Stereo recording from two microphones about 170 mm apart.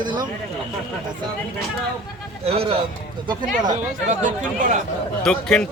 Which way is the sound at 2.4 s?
35° right (ahead or behind).